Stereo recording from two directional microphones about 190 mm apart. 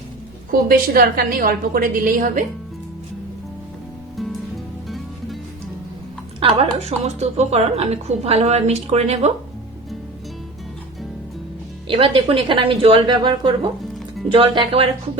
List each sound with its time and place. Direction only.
0.7 s a woman's voice: 50° right (ahead or behind)
4.9 s music: centre (ahead or behind)
6.4 s a woman's voice: 30° right (ahead or behind)
11.9 s a woman's voice: 30° right (ahead or behind)